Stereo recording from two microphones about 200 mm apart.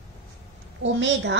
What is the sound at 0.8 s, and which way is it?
Speech, 65° right (ahead or behind).